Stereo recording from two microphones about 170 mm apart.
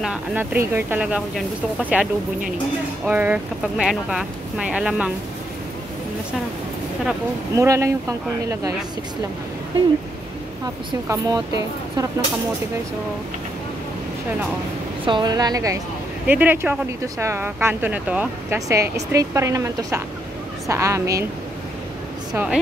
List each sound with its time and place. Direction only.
0.0 s speech: 5° right (ahead or behind)
3.6 s speech: centre (ahead or behind)
7.5 s speech: 15° right (ahead or behind)
11.1 s speech: 20° right (ahead or behind)
15.0 s speech: 25° right (ahead or behind)
16.3 s speech: 10° right (ahead or behind)
22.3 s speech: 5° right (ahead or behind)